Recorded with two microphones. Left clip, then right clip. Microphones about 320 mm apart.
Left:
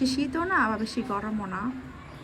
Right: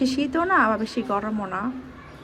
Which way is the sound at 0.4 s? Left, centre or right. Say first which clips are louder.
Right 6 dB; right.